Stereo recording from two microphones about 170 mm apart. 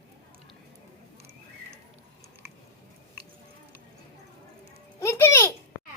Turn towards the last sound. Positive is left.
turn(degrees=15)  # may be behind; listen again after turning